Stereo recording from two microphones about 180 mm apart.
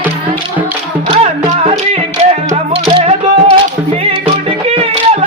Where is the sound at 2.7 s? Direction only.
35° right (ahead or behind).